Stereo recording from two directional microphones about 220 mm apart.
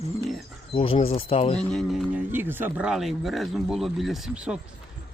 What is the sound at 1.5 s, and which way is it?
Speech, centre (ahead or behind).